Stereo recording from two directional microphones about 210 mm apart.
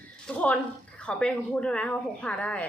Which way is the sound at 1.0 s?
5° left (ahead or behind).